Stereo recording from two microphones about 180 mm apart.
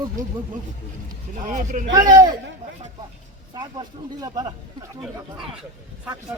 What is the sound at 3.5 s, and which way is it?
Speech, 20° right (ahead or behind).